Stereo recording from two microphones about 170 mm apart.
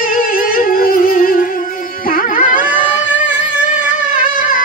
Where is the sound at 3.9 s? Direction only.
50° left (ahead or behind).